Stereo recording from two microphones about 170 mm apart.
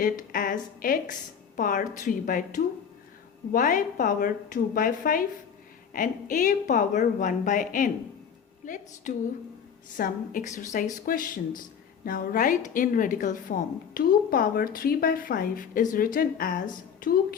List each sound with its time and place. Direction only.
0.0 s a woman's voice: 55° left (ahead or behind)